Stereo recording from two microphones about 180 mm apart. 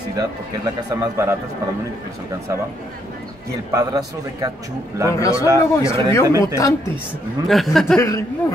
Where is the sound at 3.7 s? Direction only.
20° right (ahead or behind).